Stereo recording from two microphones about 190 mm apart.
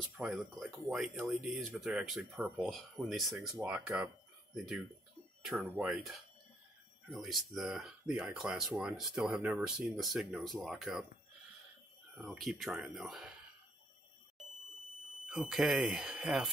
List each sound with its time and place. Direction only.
0.2 s speech: centre (ahead or behind)
5.4 s speech: 5° right (ahead or behind)
12.2 s speech: centre (ahead or behind)
15.2 s speech: 5° right (ahead or behind)